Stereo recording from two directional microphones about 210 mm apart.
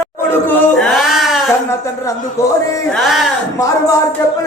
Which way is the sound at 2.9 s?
Centre (ahead or behind).